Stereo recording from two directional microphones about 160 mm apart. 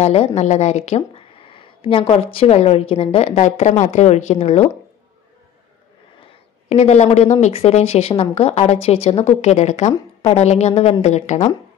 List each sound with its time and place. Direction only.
0.0 s speech: 40° left (ahead or behind)
6.7 s speech: 45° left (ahead or behind)